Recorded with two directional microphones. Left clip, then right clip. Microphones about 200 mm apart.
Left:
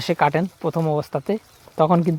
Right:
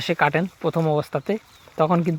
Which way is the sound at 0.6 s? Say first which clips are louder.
Right 1 dB; 5° left (ahead or behind).